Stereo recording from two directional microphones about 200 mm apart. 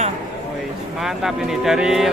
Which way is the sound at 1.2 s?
Centre (ahead or behind).